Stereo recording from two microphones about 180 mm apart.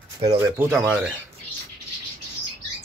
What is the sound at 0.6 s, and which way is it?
Speech, 10° right (ahead or behind).